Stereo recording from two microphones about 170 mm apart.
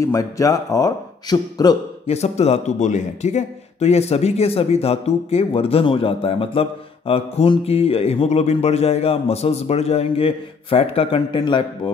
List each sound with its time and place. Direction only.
0.0 s speech: 20° left (ahead or behind)
2.0 s a man's voice: 40° left (ahead or behind)